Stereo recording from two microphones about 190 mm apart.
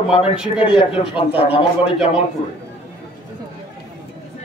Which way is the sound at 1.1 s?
30° left (ahead or behind).